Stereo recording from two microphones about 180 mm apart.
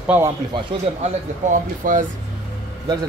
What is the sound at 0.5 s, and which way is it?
Speech, 40° right (ahead or behind).